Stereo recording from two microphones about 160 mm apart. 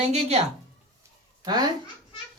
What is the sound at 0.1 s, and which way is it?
Speech, 40° right (ahead or behind).